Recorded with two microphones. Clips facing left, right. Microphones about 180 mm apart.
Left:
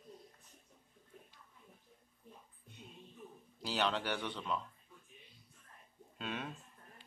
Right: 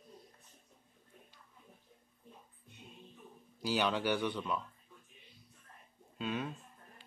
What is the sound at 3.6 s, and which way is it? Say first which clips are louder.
Speech: right 3 dB; 5° right (ahead or behind).